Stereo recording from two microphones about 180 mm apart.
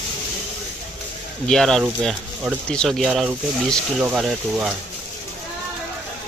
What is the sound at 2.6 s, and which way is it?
Speech, 5° left (ahead or behind).